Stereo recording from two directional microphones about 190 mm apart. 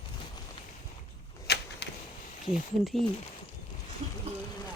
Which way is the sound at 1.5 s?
60° left (ahead or behind).